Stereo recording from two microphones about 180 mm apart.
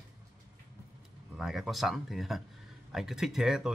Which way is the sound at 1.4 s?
Centre (ahead or behind).